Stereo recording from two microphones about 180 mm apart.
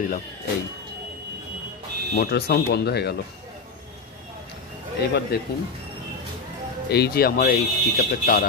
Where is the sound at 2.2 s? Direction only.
60° left (ahead or behind).